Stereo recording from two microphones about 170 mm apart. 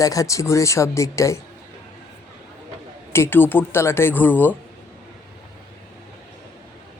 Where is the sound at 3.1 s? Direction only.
15° left (ahead or behind).